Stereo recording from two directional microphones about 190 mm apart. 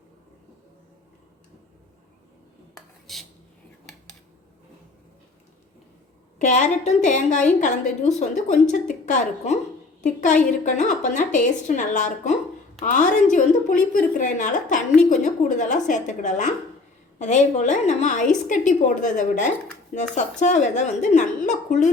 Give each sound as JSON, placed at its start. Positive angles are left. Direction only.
{"t": 3.1, "sound": "speech", "side_deg": 0}
{"t": 6.4, "sound": "a woman's voice", "side_deg": 40}